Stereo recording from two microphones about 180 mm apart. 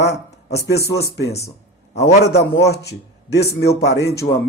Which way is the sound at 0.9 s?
65° left (ahead or behind).